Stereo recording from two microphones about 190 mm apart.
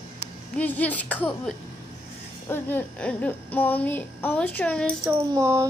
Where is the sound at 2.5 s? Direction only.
10° left (ahead or behind).